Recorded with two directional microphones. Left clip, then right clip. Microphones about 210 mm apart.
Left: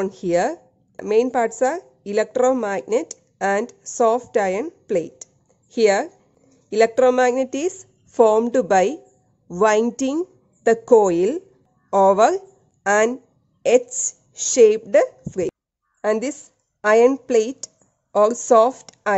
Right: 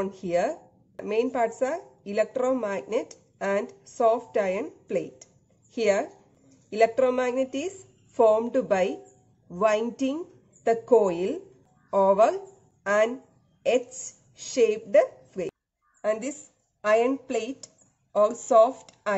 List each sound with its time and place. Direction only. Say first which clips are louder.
0.0 s speech: left 6 dB; 45° left (ahead or behind)
13.6 s a sound: left 8 dB; 50° left (ahead or behind)
14.5 s speech: left 7 dB; 50° left (ahead or behind)